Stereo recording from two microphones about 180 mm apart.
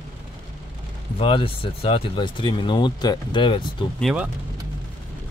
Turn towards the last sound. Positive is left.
turn(degrees=-5)  # may be behind; listen again after turning